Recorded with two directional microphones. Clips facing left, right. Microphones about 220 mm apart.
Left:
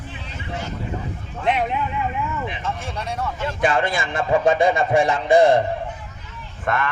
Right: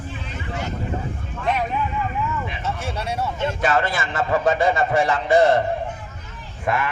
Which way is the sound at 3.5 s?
15° left (ahead or behind).